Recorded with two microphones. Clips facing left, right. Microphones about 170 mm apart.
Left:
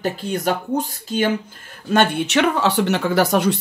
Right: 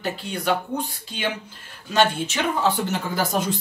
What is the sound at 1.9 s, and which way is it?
Speech, 55° left (ahead or behind).